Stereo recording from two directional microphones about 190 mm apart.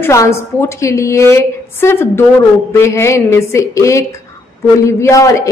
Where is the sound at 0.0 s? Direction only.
15° left (ahead or behind).